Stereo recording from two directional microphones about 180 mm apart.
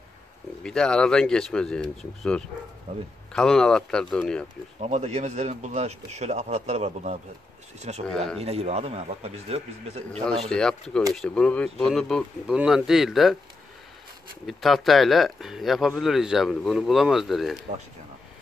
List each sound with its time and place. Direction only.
0.7 s speech: 5° left (ahead or behind)
4.7 s speech: 35° right (ahead or behind)
8.1 s speech: 5° left (ahead or behind)
8.4 s speech: 35° right (ahead or behind)
10.2 s speech: 5° left (ahead or behind)
14.4 s speech: centre (ahead or behind)